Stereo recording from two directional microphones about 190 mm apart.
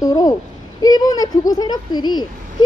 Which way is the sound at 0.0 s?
20° left (ahead or behind).